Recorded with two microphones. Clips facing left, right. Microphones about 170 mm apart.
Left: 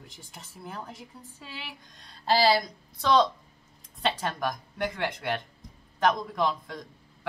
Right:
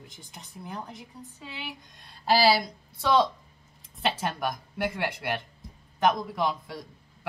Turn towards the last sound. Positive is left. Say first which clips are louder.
# even
turn(degrees=-5)  # may be behind; listen again after turning